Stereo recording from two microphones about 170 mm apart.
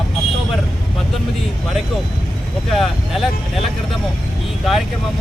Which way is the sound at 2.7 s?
Centre (ahead or behind).